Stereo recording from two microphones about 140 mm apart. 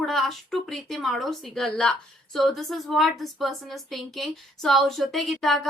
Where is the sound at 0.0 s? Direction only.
Centre (ahead or behind).